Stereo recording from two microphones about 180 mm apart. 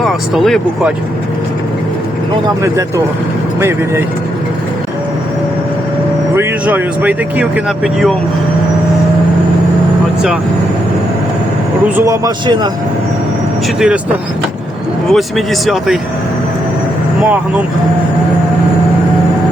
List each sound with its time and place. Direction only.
0.0 s speech: centre (ahead or behind)
3.6 s speech: 15° right (ahead or behind)
6.3 s speech: 10° right (ahead or behind)
11.9 s speech: 15° right (ahead or behind)
13.7 s speech: 5° right (ahead or behind)
15.1 s speech: centre (ahead or behind)